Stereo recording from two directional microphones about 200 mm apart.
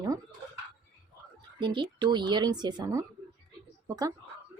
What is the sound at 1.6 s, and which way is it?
Speech, 25° right (ahead or behind).